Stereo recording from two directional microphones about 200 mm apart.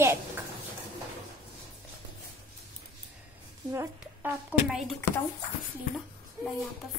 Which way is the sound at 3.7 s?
10° right (ahead or behind).